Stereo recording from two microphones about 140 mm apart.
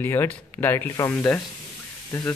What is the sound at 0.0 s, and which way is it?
Speech, 15° left (ahead or behind).